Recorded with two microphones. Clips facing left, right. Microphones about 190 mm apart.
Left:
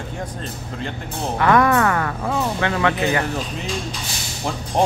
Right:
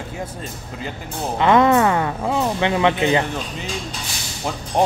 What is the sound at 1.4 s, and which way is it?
Speech, 20° right (ahead or behind).